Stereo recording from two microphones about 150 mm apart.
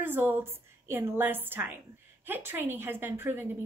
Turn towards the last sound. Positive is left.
turn(degrees=-15)  # may be behind; listen again after turning